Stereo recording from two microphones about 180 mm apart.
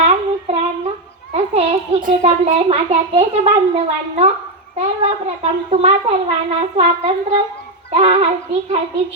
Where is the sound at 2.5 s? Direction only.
35° right (ahead or behind).